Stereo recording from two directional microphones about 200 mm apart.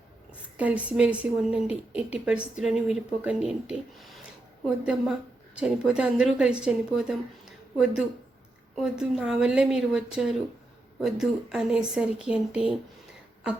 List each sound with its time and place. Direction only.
0.5 s speech: 5° right (ahead or behind)